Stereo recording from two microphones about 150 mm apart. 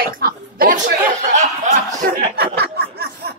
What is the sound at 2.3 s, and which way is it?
Chuckle, 90° right.